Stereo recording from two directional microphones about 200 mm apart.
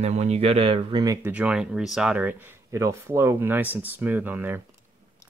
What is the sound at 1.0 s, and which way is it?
Speech, 15° right (ahead or behind).